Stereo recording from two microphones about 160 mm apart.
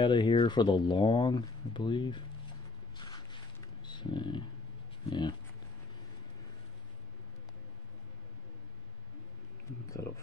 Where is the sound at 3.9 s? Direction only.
30° left (ahead or behind).